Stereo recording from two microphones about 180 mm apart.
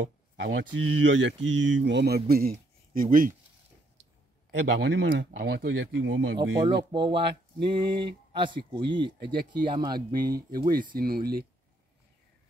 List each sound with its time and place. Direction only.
0.0 s speech: 90° right; by 3.3 s 50° right (ahead or behind)
4.5 s speech: 90° right
5.3 s speech: 60° right (ahead or behind); by 6.4 s 80° right
6.9 s speech: 25° right (ahead or behind)
10.1 s speech: 55° right (ahead or behind)